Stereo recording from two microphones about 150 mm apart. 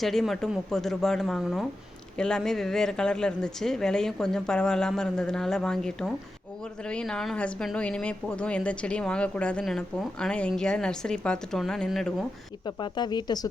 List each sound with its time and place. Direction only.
0.0 s speech: centre (ahead or behind)
12.6 s speech: 30° left (ahead or behind)